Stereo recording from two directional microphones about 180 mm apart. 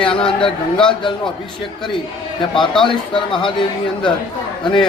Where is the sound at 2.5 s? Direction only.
Centre (ahead or behind).